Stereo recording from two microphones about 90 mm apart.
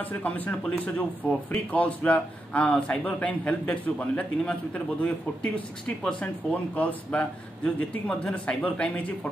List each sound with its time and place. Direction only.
0.0 s speech: 20° left (ahead or behind)